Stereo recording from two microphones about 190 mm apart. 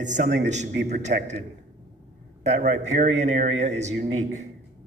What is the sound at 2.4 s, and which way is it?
A man's voice, 35° right (ahead or behind).